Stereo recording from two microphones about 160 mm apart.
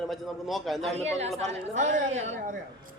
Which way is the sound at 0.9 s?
40° right (ahead or behind).